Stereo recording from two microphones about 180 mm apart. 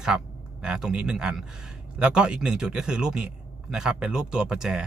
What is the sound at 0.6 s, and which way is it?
A man's voice, 5° right (ahead or behind).